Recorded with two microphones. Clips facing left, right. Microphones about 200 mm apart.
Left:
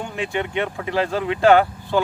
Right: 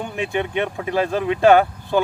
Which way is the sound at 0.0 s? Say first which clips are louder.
Right 2 dB; 20° right (ahead or behind).